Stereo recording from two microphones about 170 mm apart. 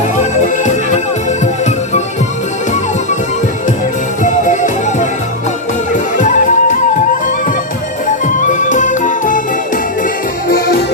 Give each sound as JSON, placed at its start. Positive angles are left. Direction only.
{"t": 0.2, "sound": "music", "side_deg": 45}
{"t": 4.2, "sound": "music", "side_deg": 50}
{"t": 6.1, "sound": "music", "side_deg": 50}
{"t": 8.0, "sound": "music", "side_deg": 50}
{"t": 10.5, "sound": "music", "side_deg": 65}